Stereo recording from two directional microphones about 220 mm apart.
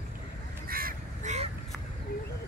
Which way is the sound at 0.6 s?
40° right (ahead or behind).